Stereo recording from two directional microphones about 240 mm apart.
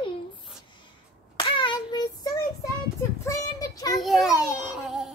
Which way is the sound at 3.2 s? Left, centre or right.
Centre.